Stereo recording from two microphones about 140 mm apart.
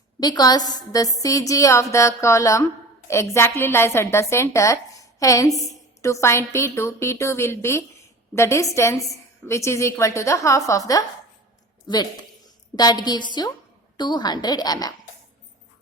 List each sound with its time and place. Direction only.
0.2 s a woman's voice: 30° left (ahead or behind)
12.7 s a woman's voice: 30° left (ahead or behind)